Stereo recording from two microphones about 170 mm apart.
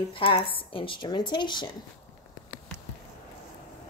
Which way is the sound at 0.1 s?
30° left (ahead or behind).